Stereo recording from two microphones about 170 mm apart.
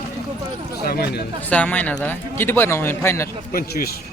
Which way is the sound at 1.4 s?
10° left (ahead or behind).